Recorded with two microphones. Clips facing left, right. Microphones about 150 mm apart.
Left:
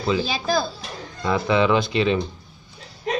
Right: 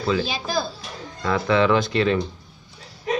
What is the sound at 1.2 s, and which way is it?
Speech, 10° left (ahead or behind).